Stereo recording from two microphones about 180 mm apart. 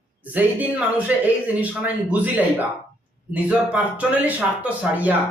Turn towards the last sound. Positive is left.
turn(degrees=-10)  # may be behind; listen again after turning